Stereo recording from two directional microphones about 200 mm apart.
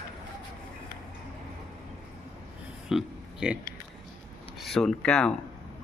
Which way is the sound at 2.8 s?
Centre (ahead or behind).